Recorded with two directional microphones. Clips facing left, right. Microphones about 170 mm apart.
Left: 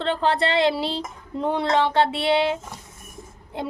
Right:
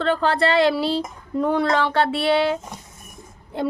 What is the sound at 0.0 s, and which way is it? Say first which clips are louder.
Speech: right 2 dB; 20° left (ahead or behind).